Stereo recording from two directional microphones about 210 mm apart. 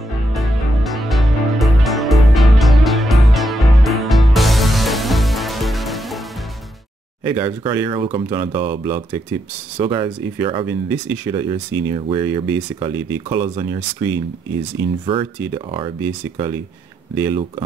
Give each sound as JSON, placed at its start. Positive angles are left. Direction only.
{"t": 0.3, "sound": "music", "side_deg": 0}
{"t": 7.4, "sound": "speech", "side_deg": -20}
{"t": 15.5, "sound": "speech", "side_deg": -25}
{"t": 17.1, "sound": "speech", "side_deg": -15}